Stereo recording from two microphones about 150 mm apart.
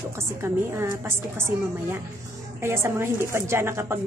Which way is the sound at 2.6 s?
15° right (ahead or behind).